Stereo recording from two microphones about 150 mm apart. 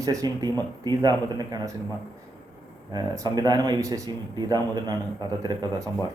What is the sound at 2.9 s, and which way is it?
Speech, 25° right (ahead or behind).